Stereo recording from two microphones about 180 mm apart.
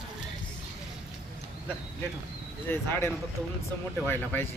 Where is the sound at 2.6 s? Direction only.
10° left (ahead or behind).